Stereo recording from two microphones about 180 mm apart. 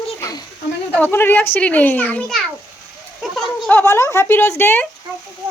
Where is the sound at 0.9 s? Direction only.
10° left (ahead or behind).